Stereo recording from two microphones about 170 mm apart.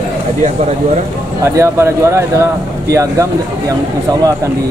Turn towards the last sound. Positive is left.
turn(degrees=-20)  # may be behind; listen again after turning